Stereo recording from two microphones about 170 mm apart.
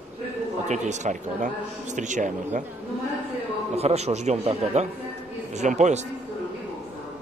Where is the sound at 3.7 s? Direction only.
40° right (ahead or behind).